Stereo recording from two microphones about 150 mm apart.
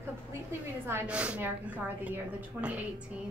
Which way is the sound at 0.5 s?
15° right (ahead or behind).